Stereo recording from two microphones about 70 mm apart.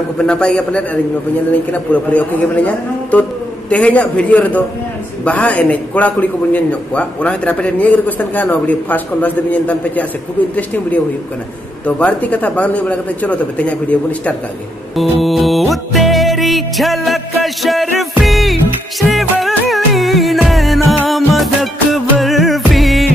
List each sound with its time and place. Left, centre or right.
0.2 s a man's voice: centre
15.0 s music: centre